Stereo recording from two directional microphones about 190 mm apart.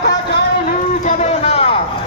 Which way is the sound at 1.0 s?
40° left (ahead or behind).